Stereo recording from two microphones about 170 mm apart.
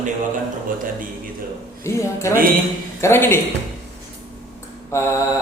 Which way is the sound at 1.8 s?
15° left (ahead or behind).